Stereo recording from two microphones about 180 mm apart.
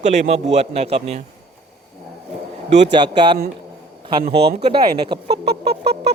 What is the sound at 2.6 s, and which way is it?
Speech, 40° right (ahead or behind).